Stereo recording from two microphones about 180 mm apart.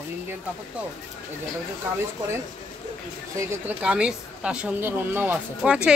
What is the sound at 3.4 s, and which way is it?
A woman's voice, 10° right (ahead or behind).